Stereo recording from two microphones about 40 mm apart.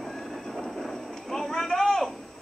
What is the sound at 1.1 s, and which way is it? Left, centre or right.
Clip-clop, centre.